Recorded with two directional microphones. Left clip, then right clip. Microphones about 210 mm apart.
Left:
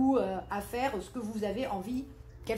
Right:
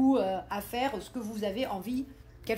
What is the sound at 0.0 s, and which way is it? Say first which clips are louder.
A woman's voice: right 2 dB; 35° right (ahead or behind).